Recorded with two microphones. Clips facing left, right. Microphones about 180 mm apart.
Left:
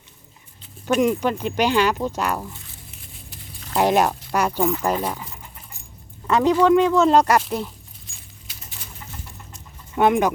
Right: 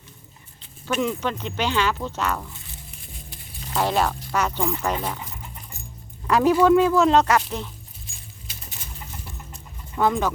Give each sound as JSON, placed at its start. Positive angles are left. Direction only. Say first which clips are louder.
{"t": 0.9, "sound": "speech", "louder": "left 5 dB", "side_deg": 15}
{"t": 3.8, "sound": "speech", "louder": "left 4 dB", "side_deg": 15}
{"t": 6.4, "sound": "speech", "louder": "even", "side_deg": -10}
{"t": 7.1, "sound": "speech", "louder": "left 2 dB", "side_deg": 10}
{"t": 10.1, "sound": "speech", "louder": "left 5 dB", "side_deg": 15}